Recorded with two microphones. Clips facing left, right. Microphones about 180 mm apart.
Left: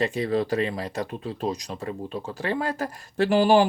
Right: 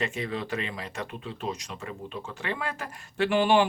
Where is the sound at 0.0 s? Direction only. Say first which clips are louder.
Left 7 dB; 35° left (ahead or behind).